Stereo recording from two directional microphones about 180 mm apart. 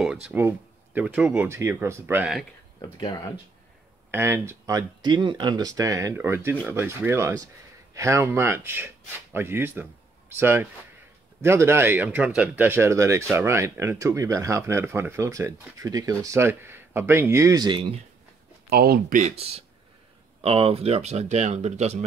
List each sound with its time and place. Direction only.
0.0 s speech: 5° right (ahead or behind)
2.8 s speech: 25° left (ahead or behind)
4.1 s speech: 15° right (ahead or behind)
18.7 s speech: 60° right (ahead or behind)
19.3 s speech: 35° right (ahead or behind)